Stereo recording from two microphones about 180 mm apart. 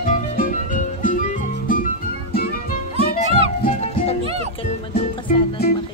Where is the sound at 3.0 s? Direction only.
40° left (ahead or behind).